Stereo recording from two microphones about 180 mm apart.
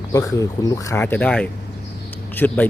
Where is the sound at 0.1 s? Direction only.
20° left (ahead or behind).